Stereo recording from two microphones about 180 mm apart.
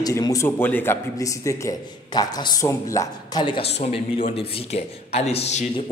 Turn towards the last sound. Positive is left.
turn(degrees=35)  # may be behind; listen again after turning